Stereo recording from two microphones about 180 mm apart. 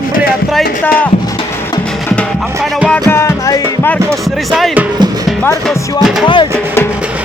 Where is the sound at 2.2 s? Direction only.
Centre (ahead or behind); by 3.9 s 15° left (ahead or behind).